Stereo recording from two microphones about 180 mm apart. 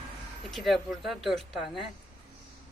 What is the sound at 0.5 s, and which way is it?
Speech, centre (ahead or behind).